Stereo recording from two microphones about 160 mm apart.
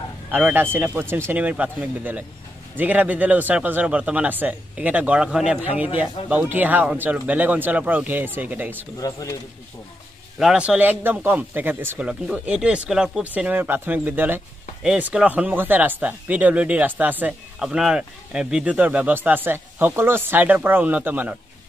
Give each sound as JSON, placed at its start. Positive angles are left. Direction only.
{"t": 0.3, "sound": "speech", "side_deg": -10}
{"t": 10.4, "sound": "speech", "side_deg": -5}